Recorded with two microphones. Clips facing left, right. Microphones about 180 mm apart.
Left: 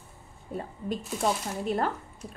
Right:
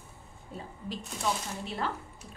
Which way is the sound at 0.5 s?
55° left (ahead or behind).